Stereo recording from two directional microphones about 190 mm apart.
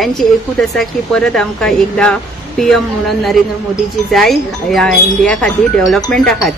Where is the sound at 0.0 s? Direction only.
Centre (ahead or behind).